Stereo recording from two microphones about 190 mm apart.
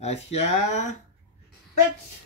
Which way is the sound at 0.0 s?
35° left (ahead or behind).